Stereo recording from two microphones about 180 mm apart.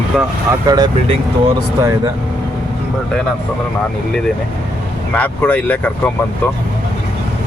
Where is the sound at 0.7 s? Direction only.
25° right (ahead or behind).